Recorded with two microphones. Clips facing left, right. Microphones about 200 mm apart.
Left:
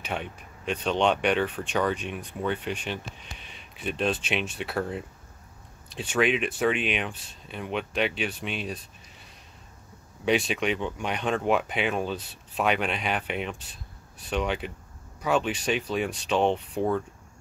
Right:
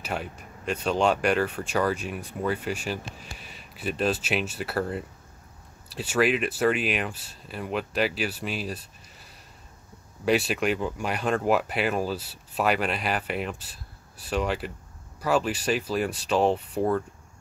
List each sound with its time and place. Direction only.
0.0 s speech: centre (ahead or behind)